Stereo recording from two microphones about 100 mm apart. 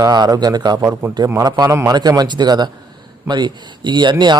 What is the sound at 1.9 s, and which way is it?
A man's voice, 40° right (ahead or behind).